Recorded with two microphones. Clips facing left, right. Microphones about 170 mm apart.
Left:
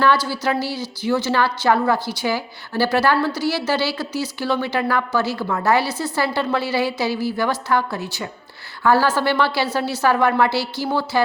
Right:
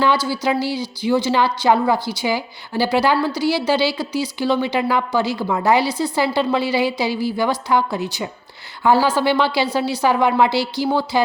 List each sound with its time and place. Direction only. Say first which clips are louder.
0.0 s a woman's voice: even; 15° right (ahead or behind)